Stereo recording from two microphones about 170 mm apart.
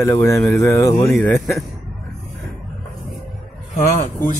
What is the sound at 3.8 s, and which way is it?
Speech, 55° left (ahead or behind).